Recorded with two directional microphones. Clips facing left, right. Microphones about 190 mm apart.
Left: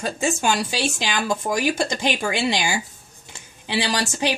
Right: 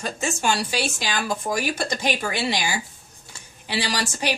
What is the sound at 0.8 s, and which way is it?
Speech, 25° left (ahead or behind).